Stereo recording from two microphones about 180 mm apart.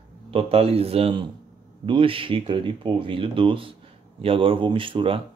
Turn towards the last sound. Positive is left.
turn(degrees=-30)  # may be behind; listen again after turning